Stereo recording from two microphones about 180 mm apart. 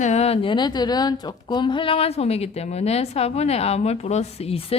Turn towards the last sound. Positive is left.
turn(degrees=30)  # may be behind; listen again after turning